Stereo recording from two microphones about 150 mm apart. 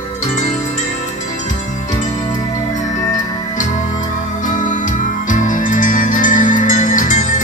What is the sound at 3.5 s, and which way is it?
Music, 55° left (ahead or behind).